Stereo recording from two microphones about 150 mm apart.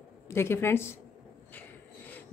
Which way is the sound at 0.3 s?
15° left (ahead or behind).